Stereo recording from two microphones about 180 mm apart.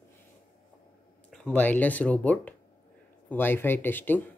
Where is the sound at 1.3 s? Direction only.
10° left (ahead or behind).